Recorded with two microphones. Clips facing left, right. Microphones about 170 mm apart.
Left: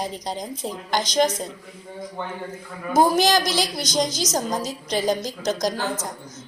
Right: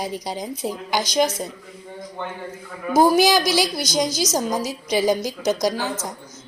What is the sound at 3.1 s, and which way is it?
A woman's voice, 10° right (ahead or behind).